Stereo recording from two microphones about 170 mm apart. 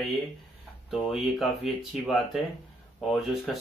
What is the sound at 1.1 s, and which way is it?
Speech, centre (ahead or behind).